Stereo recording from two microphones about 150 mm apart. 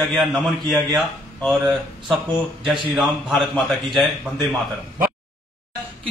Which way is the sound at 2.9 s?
Centre (ahead or behind).